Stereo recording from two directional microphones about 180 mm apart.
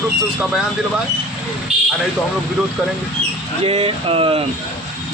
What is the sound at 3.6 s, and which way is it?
Speech, 30° right (ahead or behind).